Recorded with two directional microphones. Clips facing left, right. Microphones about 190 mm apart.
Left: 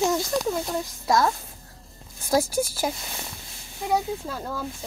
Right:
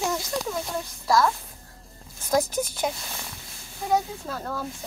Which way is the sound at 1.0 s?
20° left (ahead or behind).